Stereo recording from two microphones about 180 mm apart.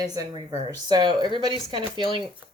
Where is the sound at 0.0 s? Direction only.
20° right (ahead or behind).